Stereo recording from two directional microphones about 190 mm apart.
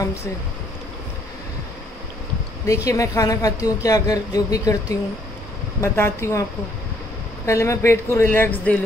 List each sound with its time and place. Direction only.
2.6 s a woman's voice: 15° left (ahead or behind)
7.4 s a woman's voice: 15° left (ahead or behind)